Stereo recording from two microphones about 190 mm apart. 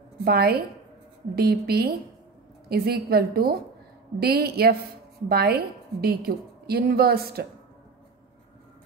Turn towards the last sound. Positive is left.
turn(degrees=-55)  # may be behind; listen again after turning